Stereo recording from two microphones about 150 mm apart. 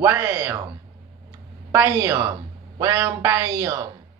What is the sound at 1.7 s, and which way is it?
Speech, 20° right (ahead or behind).